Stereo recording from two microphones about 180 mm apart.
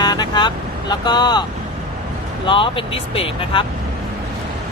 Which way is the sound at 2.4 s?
30° left (ahead or behind).